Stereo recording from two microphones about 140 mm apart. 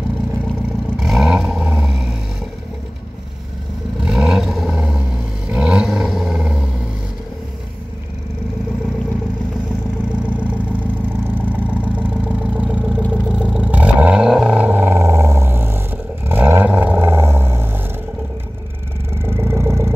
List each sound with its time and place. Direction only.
0.9 s vehicle: centre (ahead or behind)
4.0 s vehicle: 5° right (ahead or behind)
5.5 s roar: 5° right (ahead or behind)
10.2 s vehicle: 10° right (ahead or behind)
19.1 s vehicle: 15° right (ahead or behind)